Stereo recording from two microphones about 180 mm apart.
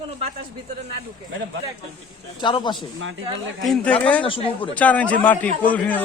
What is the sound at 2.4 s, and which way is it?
Speech, 25° left (ahead or behind).